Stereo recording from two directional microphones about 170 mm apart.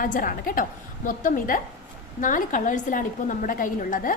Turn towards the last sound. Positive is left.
turn(degrees=50)  # may be behind; listen again after turning